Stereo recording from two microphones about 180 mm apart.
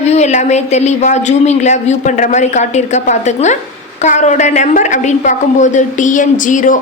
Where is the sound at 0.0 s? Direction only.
40° left (ahead or behind).